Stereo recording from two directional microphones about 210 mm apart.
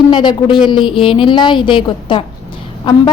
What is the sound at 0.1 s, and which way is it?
A woman's voice, 20° left (ahead or behind).